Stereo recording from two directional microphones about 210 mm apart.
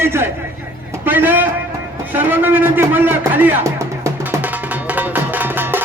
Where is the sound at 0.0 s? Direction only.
10° right (ahead or behind).